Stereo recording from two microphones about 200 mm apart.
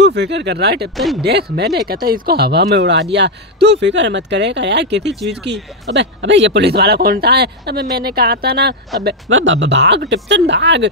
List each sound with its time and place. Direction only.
0.0 s speech: 60° right (ahead or behind)
0.9 s speech: centre (ahead or behind)
1.2 s speech: 55° right (ahead or behind)
9.0 s speech: 70° right (ahead or behind)